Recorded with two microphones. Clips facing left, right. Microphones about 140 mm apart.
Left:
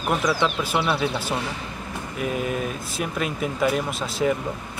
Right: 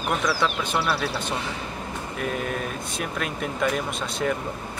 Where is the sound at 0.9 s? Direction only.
15° left (ahead or behind).